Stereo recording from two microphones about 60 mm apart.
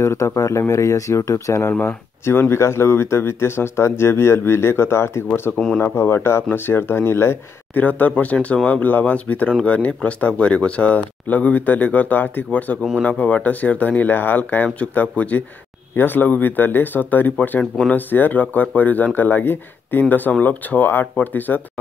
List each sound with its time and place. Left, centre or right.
0.0 s speech: left
1.7 s speech: left
2.2 s speech: left
7.7 s speech: left
17.6 s speech: centre
17.9 s speech: left